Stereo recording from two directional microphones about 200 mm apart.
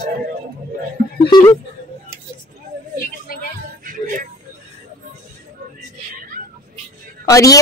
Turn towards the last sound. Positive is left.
turn(degrees=15)  # may be behind; listen again after turning